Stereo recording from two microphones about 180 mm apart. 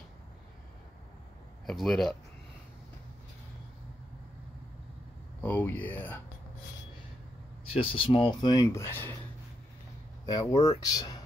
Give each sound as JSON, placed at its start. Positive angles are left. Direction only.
{"t": 1.7, "sound": "speech", "side_deg": 0}
{"t": 5.4, "sound": "speech", "side_deg": 10}
{"t": 7.6, "sound": "speech", "side_deg": 30}
{"t": 10.2, "sound": "speech", "side_deg": 20}